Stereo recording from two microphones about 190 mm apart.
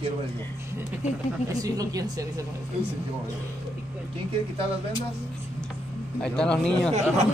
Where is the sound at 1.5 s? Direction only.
20° right (ahead or behind).